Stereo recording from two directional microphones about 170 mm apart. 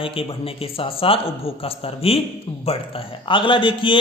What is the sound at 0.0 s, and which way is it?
A man's voice, 35° left (ahead or behind).